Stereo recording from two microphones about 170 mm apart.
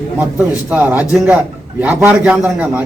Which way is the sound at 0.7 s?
10° right (ahead or behind).